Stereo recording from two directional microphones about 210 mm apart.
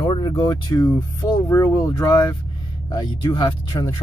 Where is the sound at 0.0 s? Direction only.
25° left (ahead or behind).